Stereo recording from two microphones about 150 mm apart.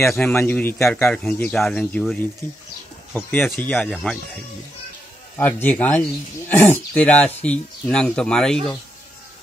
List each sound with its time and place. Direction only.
0.0 s speech: centre (ahead or behind)
0.3 s speech: 15° left (ahead or behind)
2.4 s speech: 15° left (ahead or behind)
5.4 s speech: 10° left (ahead or behind)